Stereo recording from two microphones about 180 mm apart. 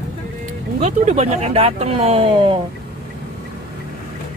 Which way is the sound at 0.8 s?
40° right (ahead or behind).